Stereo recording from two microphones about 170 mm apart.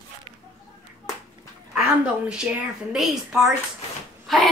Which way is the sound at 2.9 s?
Centre (ahead or behind).